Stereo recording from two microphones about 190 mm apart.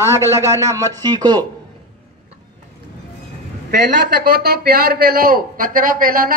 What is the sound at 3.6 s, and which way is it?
A man's voice, 55° right (ahead or behind).